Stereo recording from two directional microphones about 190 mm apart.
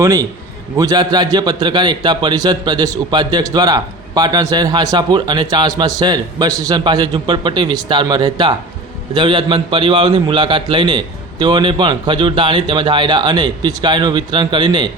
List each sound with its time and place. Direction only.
0.0 s a man's voice: 15° right (ahead or behind)